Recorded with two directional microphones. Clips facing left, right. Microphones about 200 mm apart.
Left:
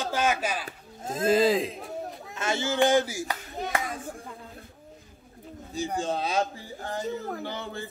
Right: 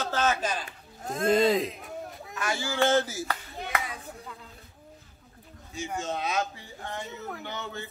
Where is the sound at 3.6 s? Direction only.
40° left (ahead or behind).